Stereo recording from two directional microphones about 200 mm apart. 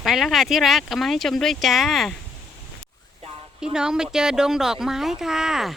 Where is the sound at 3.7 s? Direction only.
5° right (ahead or behind).